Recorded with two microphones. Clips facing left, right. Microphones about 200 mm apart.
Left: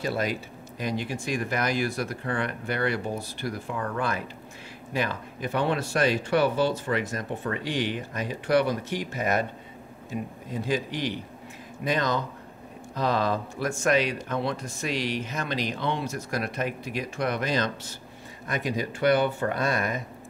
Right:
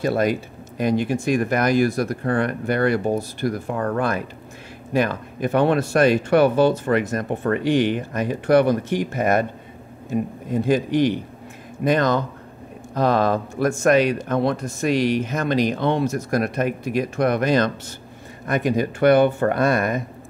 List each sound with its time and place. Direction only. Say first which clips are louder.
0.0 s speech: right 8 dB; 50° right (ahead or behind)